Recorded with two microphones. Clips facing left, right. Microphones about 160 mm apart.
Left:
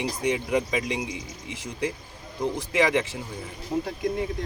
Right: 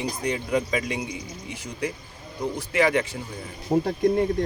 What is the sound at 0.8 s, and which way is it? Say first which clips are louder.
Speech: even; 90° left.